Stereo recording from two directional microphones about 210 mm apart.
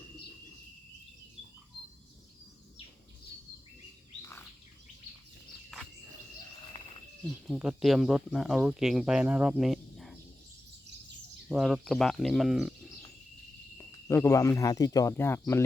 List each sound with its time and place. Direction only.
7.4 s speech: 5° right (ahead or behind)
11.4 s speech: centre (ahead or behind)
13.7 s speech: 15° left (ahead or behind)